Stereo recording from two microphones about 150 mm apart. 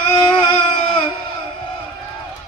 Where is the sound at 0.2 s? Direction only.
35° left (ahead or behind).